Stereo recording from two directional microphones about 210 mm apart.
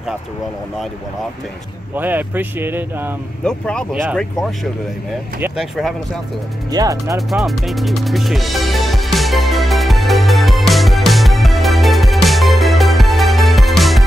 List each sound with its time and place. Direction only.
2.0 s speech: 10° right (ahead or behind)
3.4 s speech: 5° left (ahead or behind)
6.7 s speech: 15° right (ahead or behind)
7.2 s music: centre (ahead or behind)